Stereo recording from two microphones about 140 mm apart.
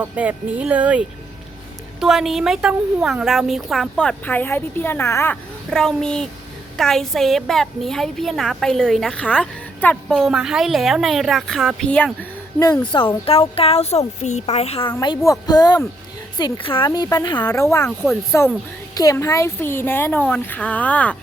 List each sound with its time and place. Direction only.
0.0 s a woman's voice: 10° right (ahead or behind); by 5.4 s 15° left (ahead or behind)
5.7 s a woman's voice: 5° left (ahead or behind)
13.2 s speech: 45° left (ahead or behind)
15.2 s speech: 25° left (ahead or behind)
17.8 s a woman's voice: centre (ahead or behind)
19.1 s speech: 20° left (ahead or behind)